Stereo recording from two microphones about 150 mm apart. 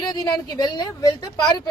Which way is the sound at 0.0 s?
25° left (ahead or behind).